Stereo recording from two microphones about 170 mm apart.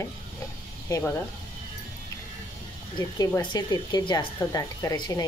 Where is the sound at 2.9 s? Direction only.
25° left (ahead or behind).